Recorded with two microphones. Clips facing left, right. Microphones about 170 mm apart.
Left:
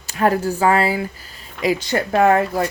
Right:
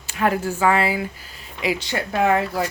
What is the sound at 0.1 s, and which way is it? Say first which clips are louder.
Speech: left 3 dB; 40° left (ahead or behind).